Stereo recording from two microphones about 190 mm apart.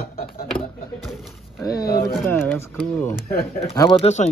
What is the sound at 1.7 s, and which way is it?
Speech, 55° left (ahead or behind).